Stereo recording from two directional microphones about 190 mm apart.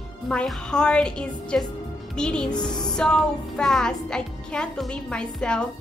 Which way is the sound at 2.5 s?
20° left (ahead or behind).